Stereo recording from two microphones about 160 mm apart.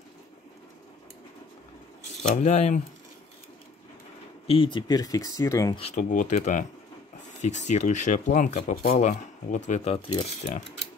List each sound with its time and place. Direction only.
2.2 s speech: 45° left (ahead or behind)
4.5 s speech: 30° left (ahead or behind)
5.8 s speech: 45° left (ahead or behind)